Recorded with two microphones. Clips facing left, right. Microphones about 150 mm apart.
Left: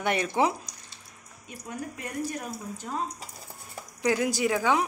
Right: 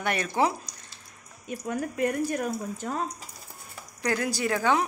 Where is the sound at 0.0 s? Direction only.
20° left (ahead or behind).